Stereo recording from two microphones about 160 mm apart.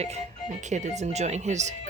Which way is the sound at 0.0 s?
40° right (ahead or behind).